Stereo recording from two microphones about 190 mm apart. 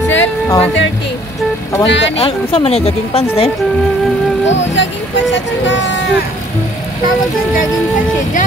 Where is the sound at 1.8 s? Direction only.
70° left (ahead or behind).